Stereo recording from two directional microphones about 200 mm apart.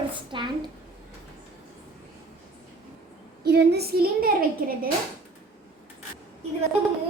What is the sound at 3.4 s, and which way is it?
A woman's voice, 55° right (ahead or behind).